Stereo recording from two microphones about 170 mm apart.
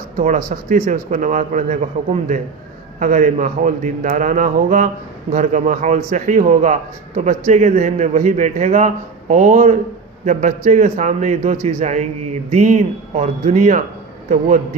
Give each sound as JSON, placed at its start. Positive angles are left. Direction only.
{"t": 0.2, "sound": "speech", "side_deg": -50}
{"t": 3.0, "sound": "speech", "side_deg": -50}